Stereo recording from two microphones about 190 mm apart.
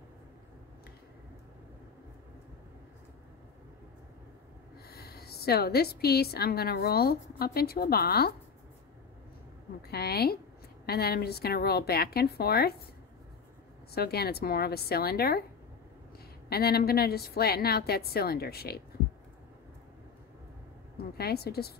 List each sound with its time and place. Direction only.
4.8 s a woman's voice: 55° left (ahead or behind)
9.8 s a woman's voice: 55° left (ahead or behind)
13.9 s a woman's voice: 55° left (ahead or behind)
16.4 s a woman's voice: 55° left (ahead or behind)
21.2 s a woman's voice: 55° left (ahead or behind)